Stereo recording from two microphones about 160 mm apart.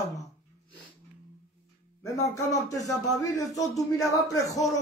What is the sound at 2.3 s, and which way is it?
Speech, 20° left (ahead or behind).